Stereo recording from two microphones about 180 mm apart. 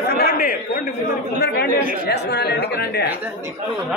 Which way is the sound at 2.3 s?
65° left (ahead or behind).